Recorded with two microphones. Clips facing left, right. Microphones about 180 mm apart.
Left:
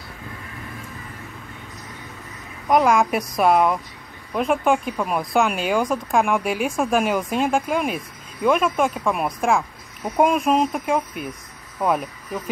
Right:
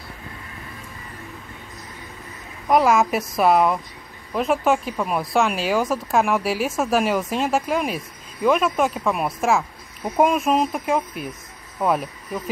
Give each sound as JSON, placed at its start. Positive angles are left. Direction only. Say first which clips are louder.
{"t": 2.7, "sound": "speech", "louder": "even", "side_deg": -5}